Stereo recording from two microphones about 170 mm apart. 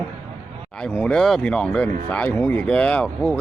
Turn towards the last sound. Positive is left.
turn(degrees=5)  # may be behind; listen again after turning